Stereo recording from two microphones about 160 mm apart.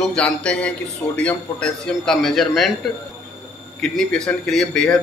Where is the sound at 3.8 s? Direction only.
5° left (ahead or behind).